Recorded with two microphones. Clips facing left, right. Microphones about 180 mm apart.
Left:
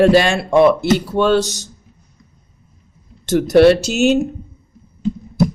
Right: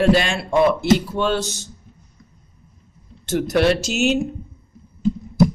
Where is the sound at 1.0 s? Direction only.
70° left (ahead or behind).